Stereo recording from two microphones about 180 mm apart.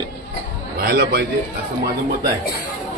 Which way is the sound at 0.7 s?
60° right (ahead or behind).